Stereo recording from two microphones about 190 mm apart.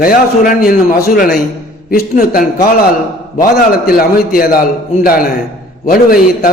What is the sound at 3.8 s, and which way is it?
A man's voice, 50° left (ahead or behind).